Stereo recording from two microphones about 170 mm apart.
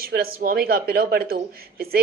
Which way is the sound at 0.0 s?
65° right (ahead or behind).